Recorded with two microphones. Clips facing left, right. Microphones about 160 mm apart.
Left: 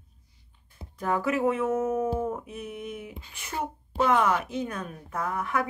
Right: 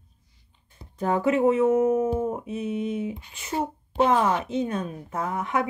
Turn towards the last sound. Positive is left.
turn(degrees=-25)  # may be behind; listen again after turning